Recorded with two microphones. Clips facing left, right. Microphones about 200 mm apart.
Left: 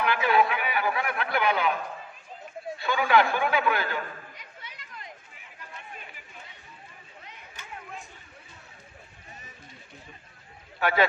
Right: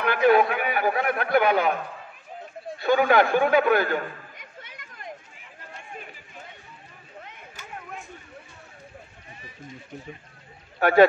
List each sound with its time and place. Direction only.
0.0 s a man's voice: 45° right (ahead or behind)
2.8 s chatter: 45° right (ahead or behind)
7.2 s a sound: 50° right (ahead or behind)
10.8 s speech: 45° right (ahead or behind)